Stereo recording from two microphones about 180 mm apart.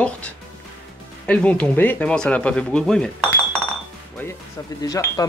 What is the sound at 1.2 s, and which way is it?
Speech, 5° left (ahead or behind).